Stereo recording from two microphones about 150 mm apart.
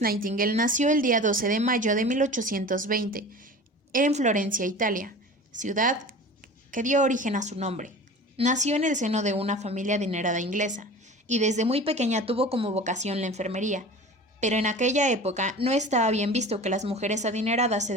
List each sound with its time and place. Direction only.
0.0 s speech: 75° right (ahead or behind)
3.9 s speech: 55° right (ahead or behind)